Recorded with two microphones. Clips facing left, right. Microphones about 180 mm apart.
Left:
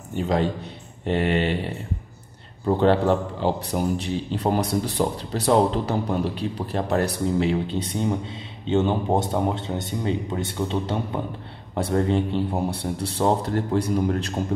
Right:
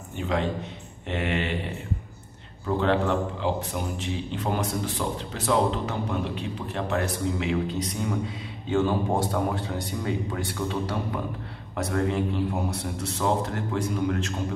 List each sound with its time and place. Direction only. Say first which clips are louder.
0.2 s a man's voice: left 4 dB; 35° left (ahead or behind)
2.6 s a man's voice: left 5 dB; 35° left (ahead or behind)